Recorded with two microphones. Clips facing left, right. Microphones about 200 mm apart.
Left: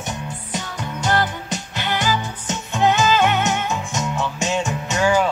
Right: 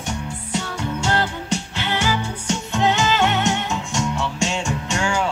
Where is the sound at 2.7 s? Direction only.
15° left (ahead or behind).